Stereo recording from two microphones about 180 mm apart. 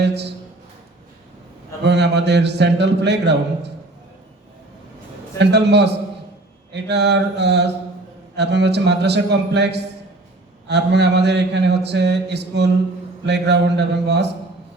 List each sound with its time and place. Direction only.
1.8 s mantra: 70° right (ahead or behind)
5.4 s mantra: 70° right (ahead or behind)